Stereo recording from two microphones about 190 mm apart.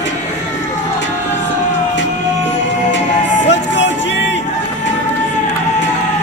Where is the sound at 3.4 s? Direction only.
70° left (ahead or behind).